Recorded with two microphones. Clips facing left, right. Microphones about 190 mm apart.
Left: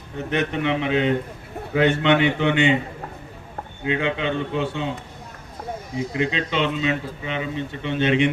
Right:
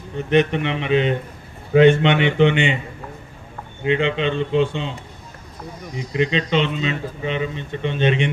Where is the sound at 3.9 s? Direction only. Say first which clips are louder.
Right 4 dB; 20° right (ahead or behind).